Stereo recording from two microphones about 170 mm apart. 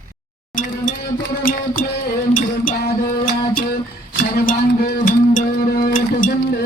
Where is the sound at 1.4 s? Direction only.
55° left (ahead or behind).